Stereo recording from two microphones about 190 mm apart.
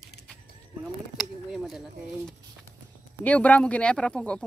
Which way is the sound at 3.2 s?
5° left (ahead or behind).